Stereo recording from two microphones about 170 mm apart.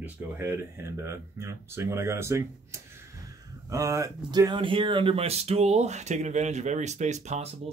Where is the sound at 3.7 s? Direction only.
20° right (ahead or behind).